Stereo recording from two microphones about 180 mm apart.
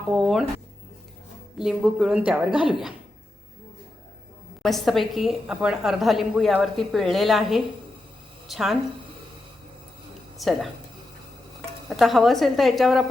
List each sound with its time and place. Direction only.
0.1 s a woman's voice: centre (ahead or behind)
1.5 s a woman's voice: centre (ahead or behind)
4.6 s a woman's voice: centre (ahead or behind)
10.3 s speech: centre (ahead or behind)
11.9 s a woman's voice: centre (ahead or behind)